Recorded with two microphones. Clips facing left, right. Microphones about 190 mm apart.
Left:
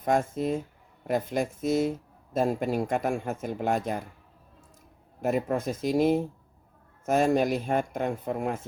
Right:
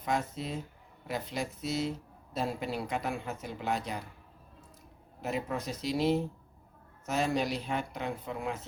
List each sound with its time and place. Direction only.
0.0 s speech: 50° left (ahead or behind)
5.2 s speech: 50° left (ahead or behind)